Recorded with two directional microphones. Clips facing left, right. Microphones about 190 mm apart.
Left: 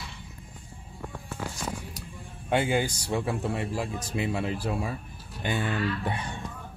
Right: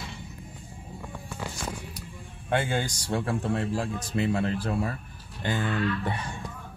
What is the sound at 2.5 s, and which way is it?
Speech, 10° left (ahead or behind).